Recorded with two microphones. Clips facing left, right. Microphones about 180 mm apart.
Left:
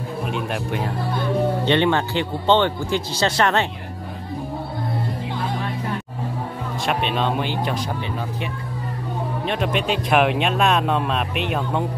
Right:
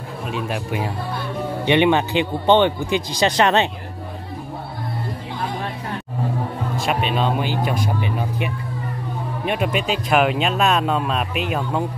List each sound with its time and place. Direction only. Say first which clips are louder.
0.3 s speech: right 2 dB; centre (ahead or behind); by 3.6 s 20° right (ahead or behind)
6.9 s speech: right 1 dB; 5° right (ahead or behind)
9.5 s speech: right 1 dB; 5° right (ahead or behind)